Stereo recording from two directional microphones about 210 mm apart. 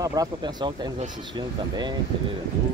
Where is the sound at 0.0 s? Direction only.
15° right (ahead or behind).